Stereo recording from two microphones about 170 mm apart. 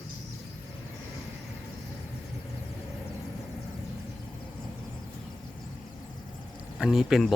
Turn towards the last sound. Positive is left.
turn(degrees=0)  # may be behind; listen again after turning